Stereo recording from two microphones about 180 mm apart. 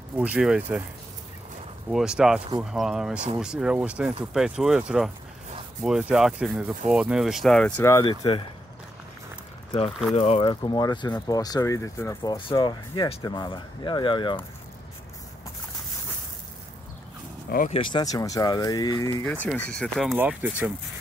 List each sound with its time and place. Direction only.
0.1 s speech: 10° right (ahead or behind)
1.9 s speech: 5° right (ahead or behind); by 8.0 s 10° left (ahead or behind)
8.0 s speech: 25° left (ahead or behind)
9.7 s speech: 30° left (ahead or behind)
10.5 s speech: 20° left (ahead or behind)
12.2 s speech: 25° left (ahead or behind)
17.6 s speech: 25° left (ahead or behind)
19.2 s speech: 5° left (ahead or behind)
20.2 s speech: 10° right (ahead or behind)